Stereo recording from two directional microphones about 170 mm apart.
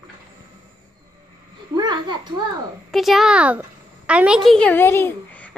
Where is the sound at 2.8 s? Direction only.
Centre (ahead or behind).